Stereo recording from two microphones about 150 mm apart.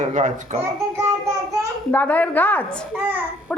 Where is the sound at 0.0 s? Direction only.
55° right (ahead or behind).